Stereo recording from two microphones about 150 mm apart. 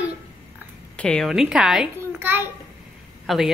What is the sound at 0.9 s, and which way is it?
A child's voice, 5° left (ahead or behind).